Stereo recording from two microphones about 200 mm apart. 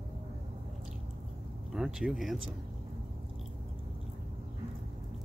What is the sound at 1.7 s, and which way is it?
Speech, 5° right (ahead or behind).